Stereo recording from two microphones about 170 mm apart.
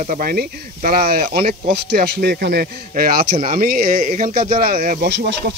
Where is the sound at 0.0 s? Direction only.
55° right (ahead or behind).